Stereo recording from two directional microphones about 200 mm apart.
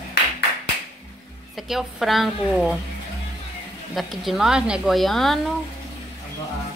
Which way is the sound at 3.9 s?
Centre (ahead or behind).